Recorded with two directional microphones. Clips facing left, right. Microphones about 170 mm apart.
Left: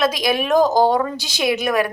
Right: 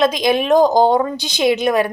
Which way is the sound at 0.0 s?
20° right (ahead or behind).